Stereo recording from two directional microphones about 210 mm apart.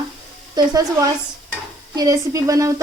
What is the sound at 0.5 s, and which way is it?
A woman's voice, 15° right (ahead or behind).